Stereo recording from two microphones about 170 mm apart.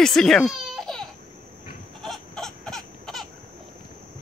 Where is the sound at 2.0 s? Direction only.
Centre (ahead or behind).